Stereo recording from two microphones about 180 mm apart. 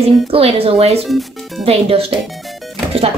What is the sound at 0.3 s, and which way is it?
Speech, 30° right (ahead or behind).